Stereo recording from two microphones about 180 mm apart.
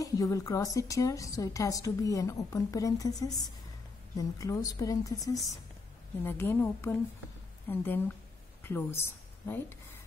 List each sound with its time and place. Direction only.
0.0 s a woman's voice: 20° left (ahead or behind)